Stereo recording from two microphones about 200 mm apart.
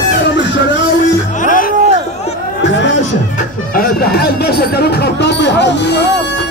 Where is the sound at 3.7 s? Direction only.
50° left (ahead or behind).